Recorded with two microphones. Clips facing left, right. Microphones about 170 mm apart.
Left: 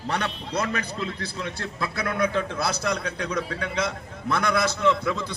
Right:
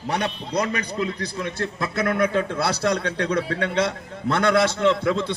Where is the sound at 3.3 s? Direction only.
70° right (ahead or behind).